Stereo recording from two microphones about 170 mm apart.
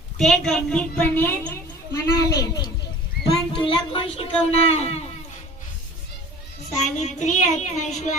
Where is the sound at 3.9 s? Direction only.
35° left (ahead or behind).